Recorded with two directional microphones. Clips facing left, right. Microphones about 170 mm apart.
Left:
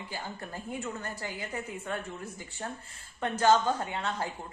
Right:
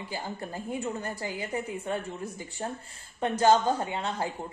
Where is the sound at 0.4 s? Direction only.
25° right (ahead or behind).